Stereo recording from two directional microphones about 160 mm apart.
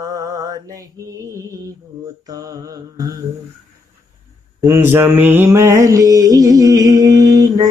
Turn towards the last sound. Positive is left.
turn(degrees=-25)  # may be behind; listen again after turning